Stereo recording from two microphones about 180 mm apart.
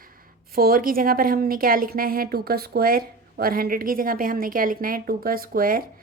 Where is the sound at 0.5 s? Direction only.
55° right (ahead or behind).